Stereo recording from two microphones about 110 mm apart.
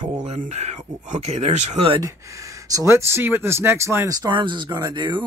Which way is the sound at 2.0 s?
30° right (ahead or behind).